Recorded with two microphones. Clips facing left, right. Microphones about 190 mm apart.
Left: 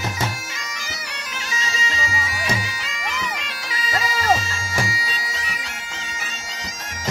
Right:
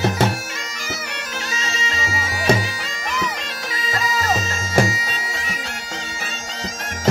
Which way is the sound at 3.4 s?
50° right (ahead or behind).